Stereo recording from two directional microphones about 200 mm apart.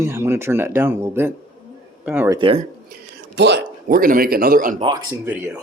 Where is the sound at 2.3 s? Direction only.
25° right (ahead or behind).